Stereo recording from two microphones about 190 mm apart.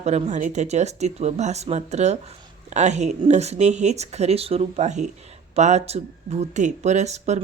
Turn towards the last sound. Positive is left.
turn(degrees=-35)  # may be behind; listen again after turning